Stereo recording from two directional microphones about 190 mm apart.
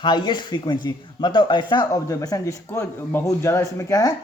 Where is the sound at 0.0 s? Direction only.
25° left (ahead or behind).